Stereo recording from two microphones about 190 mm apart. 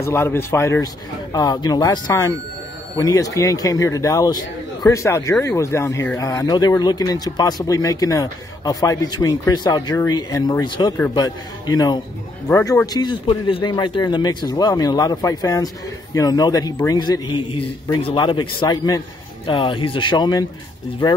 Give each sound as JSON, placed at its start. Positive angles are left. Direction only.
{"t": 0.0, "sound": "a man's voice", "side_deg": 15}